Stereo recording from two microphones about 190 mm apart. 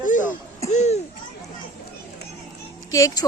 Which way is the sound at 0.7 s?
35° left (ahead or behind).